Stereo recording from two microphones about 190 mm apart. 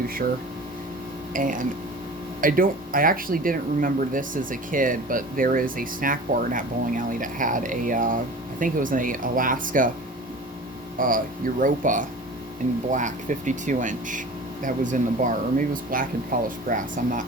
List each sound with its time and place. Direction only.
1.3 s speech: 45° right (ahead or behind)
10.9 s speech: 45° right (ahead or behind)